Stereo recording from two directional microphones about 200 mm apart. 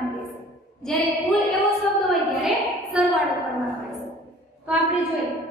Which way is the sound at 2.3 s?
Centre (ahead or behind).